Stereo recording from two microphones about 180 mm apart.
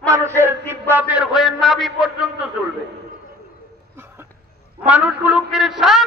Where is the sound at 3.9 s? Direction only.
15° right (ahead or behind).